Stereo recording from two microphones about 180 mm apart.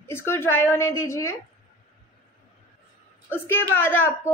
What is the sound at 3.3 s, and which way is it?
Speech, 10° left (ahead or behind).